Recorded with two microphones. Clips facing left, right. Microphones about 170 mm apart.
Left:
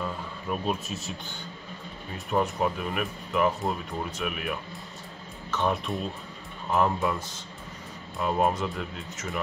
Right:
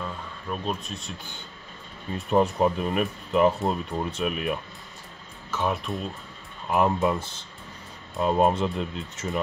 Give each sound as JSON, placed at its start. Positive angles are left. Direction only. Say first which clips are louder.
{"t": 0.0, "sound": "a sound", "louder": "left 2 dB", "side_deg": 5}
{"t": 2.3, "sound": "speech", "louder": "right 5 dB", "side_deg": -30}
{"t": 5.5, "sound": "speech", "louder": "even", "side_deg": -5}
{"t": 6.7, "sound": "speech", "louder": "right 3 dB", "side_deg": -20}